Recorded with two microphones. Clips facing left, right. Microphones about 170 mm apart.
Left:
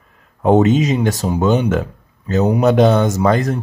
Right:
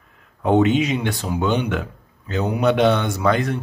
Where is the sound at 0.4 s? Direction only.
40° left (ahead or behind).